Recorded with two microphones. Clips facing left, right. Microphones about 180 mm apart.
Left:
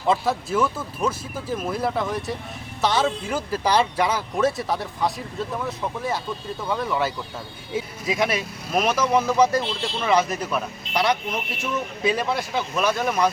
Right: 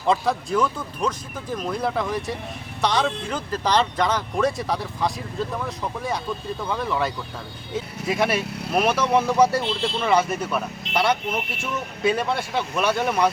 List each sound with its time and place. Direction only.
0.1 s speech: 5° left (ahead or behind)